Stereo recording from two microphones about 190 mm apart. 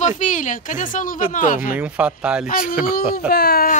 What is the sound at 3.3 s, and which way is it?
Speech, 55° left (ahead or behind).